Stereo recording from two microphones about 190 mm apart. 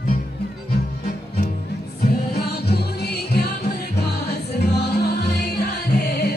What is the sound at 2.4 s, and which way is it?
Music, 60° left (ahead or behind).